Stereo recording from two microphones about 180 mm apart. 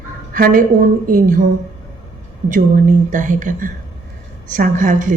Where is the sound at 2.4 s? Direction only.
45° right (ahead or behind).